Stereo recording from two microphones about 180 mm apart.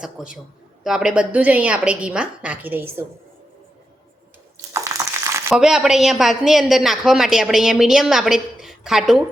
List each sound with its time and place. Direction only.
0.0 s a woman's voice: 5° right (ahead or behind)
4.7 s crumpling: 15° right (ahead or behind)
5.5 s a woman's voice: 5° right (ahead or behind)